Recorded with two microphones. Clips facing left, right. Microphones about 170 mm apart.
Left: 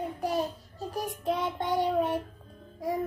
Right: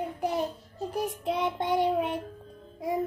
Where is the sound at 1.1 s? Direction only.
20° right (ahead or behind).